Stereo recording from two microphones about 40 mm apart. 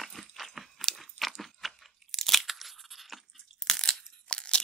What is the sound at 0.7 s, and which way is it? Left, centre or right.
Crunch, centre.